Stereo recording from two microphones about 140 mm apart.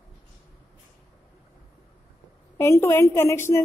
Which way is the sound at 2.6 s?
20° left (ahead or behind).